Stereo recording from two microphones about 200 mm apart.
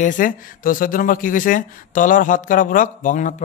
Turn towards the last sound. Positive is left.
turn(degrees=40)  # may be behind; listen again after turning